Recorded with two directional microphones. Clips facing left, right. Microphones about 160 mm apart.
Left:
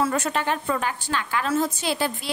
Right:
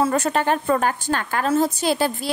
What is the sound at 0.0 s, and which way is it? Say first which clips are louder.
A woman's voice: right 4 dB; 35° right (ahead or behind).